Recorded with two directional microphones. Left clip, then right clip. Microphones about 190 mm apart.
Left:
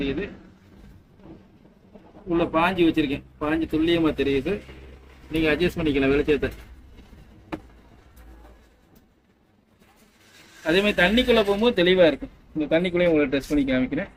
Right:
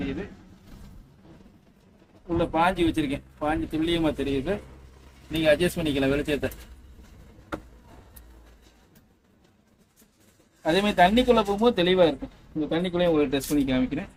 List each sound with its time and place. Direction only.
2.4 s speech: 25° right (ahead or behind)
10.7 s speech: 30° right (ahead or behind)